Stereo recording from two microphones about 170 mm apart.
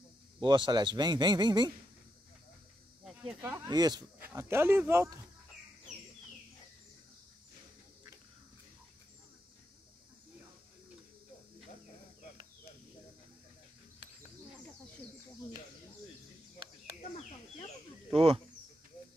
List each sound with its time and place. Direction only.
0.4 s a man's voice: 25° right (ahead or behind)
3.0 s snake: centre (ahead or behind)
3.3 s speech: 10° right (ahead or behind)
3.7 s a man's voice: 25° right (ahead or behind)
4.2 s speech: 15° right (ahead or behind)
18.1 s speech: 35° right (ahead or behind)